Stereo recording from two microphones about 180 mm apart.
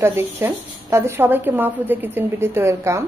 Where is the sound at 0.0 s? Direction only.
15° right (ahead or behind).